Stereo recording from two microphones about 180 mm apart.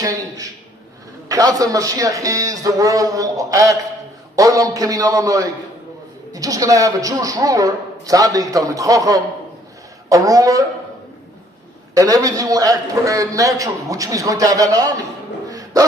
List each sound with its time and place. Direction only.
1.3 s a man's voice: 20° right (ahead or behind)
11.9 s a man's voice: 20° right (ahead or behind)
15.4 s dog: 20° right (ahead or behind)